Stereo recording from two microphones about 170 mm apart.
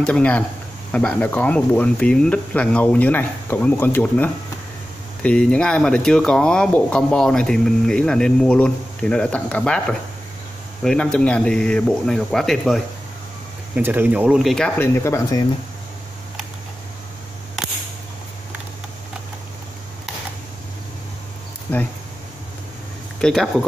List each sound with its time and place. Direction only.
0.0 s speech: 5° left (ahead or behind)
13.7 s speech: 10° right (ahead or behind)
14.8 s speech: 15° left (ahead or behind)
21.7 s speech: 10° left (ahead or behind)
23.2 s speech: centre (ahead or behind)